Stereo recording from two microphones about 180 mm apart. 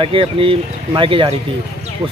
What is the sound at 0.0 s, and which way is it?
Speech, 30° right (ahead or behind).